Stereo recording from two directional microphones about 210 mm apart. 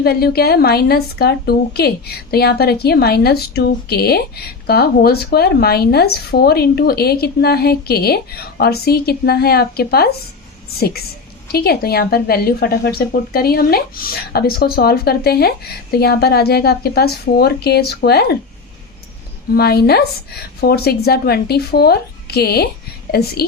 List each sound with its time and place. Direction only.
0.0 s a woman's voice: 50° left (ahead or behind)
19.5 s a woman's voice: 50° left (ahead or behind)